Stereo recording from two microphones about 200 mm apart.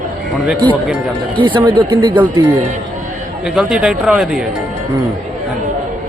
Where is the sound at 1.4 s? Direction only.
25° right (ahead or behind).